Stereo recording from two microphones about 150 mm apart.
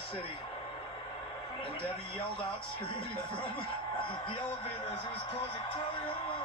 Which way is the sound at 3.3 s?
35° left (ahead or behind).